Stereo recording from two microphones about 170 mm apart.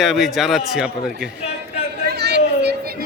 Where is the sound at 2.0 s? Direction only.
75° right (ahead or behind).